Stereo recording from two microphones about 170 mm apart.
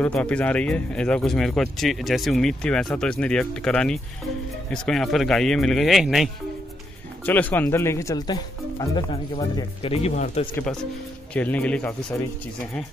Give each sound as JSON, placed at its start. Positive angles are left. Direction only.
{"t": 0.0, "sound": "speech", "side_deg": 5}
{"t": 7.2, "sound": "speech", "side_deg": 10}
{"t": 11.3, "sound": "speech", "side_deg": 10}